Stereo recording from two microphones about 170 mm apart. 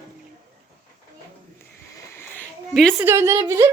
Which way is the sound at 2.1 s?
10° left (ahead or behind).